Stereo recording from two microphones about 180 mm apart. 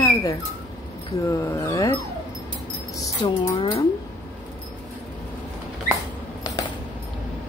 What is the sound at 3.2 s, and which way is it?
Speech, 25° left (ahead or behind).